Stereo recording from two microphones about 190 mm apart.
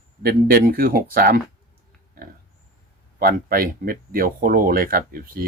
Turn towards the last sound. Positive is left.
turn(degrees=-50)  # may be behind; listen again after turning